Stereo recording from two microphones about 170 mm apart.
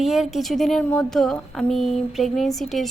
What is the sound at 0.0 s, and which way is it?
Speech, centre (ahead or behind).